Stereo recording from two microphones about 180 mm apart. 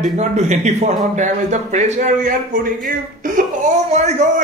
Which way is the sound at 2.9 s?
50° right (ahead or behind).